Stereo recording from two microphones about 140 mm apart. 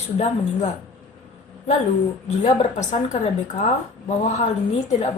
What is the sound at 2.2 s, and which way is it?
Speech, 55° left (ahead or behind).